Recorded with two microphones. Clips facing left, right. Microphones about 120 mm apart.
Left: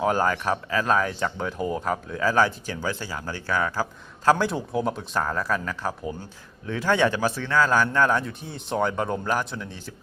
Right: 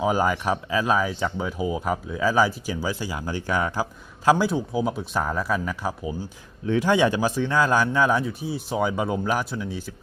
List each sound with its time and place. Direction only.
0.0 s speech: 10° right (ahead or behind)
4.3 s speech: 5° right (ahead or behind)